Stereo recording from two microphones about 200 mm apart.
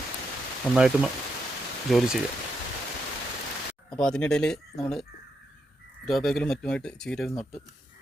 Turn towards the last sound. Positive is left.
turn(degrees=5)  # may be behind; listen again after turning